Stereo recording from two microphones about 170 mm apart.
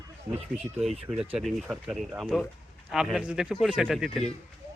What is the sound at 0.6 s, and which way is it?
A man's voice, centre (ahead or behind).